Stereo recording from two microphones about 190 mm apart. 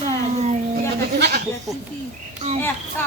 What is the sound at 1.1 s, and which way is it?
Goat, 60° right (ahead or behind).